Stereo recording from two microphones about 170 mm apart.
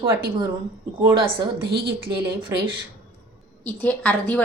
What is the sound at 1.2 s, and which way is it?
Speech, 65° right (ahead or behind).